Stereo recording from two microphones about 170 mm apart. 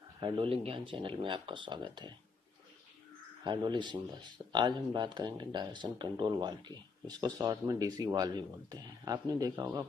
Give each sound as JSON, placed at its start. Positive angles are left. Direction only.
{"t": 0.2, "sound": "speech", "side_deg": -30}
{"t": 3.4, "sound": "speech", "side_deg": -25}